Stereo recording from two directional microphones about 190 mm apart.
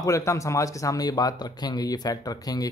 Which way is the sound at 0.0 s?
15° left (ahead or behind).